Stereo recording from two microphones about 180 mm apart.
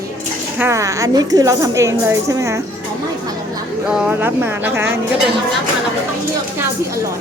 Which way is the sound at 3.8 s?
10° right (ahead or behind).